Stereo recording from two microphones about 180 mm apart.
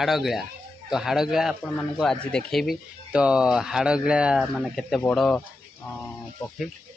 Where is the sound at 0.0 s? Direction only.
Centre (ahead or behind).